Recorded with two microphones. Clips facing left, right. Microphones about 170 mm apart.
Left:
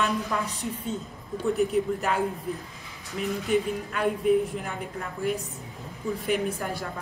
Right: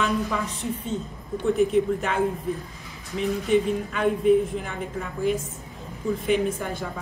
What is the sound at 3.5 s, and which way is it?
A woman's voice, centre (ahead or behind).